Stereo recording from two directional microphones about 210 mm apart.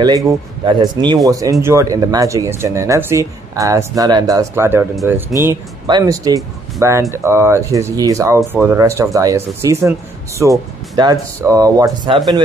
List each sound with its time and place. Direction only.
0.7 s speech: 20° right (ahead or behind)